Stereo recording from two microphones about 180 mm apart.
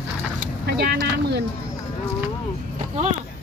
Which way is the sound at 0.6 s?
65° right (ahead or behind).